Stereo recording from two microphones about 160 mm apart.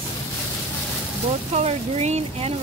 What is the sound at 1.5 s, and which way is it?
Speech, 40° right (ahead or behind).